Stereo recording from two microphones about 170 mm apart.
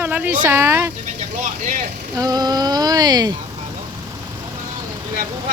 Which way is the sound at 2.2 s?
25° right (ahead or behind).